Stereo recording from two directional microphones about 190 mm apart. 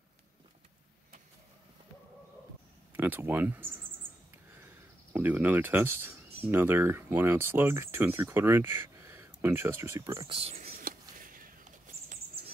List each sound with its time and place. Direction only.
2.9 s speech: 10° right (ahead or behind)
5.1 s speech: 10° right (ahead or behind); by 10.7 s 30° right (ahead or behind)
10.7 s a sound: 50° right (ahead or behind)